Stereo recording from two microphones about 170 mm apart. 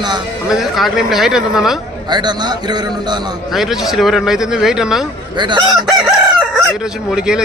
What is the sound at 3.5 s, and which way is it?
Fowl, centre (ahead or behind).